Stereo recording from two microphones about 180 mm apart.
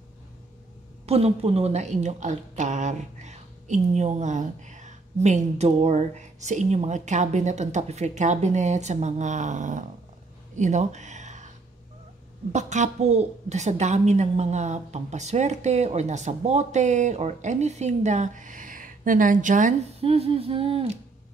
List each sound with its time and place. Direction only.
1.0 s a woman's voice: 35° right (ahead or behind)
10.5 s a sound: 40° right (ahead or behind)
12.5 s a woman's voice: 40° right (ahead or behind)